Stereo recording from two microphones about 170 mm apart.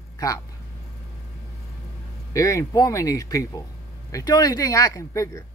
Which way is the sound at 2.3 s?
20° left (ahead or behind).